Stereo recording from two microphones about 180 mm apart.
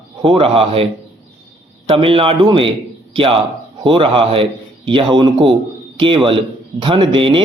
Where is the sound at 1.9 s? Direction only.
30° right (ahead or behind).